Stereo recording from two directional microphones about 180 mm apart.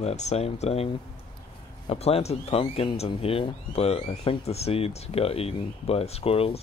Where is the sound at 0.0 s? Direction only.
40° left (ahead or behind).